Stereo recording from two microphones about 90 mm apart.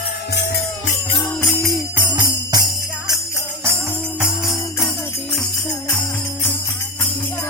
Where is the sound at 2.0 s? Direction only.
55° right (ahead or behind).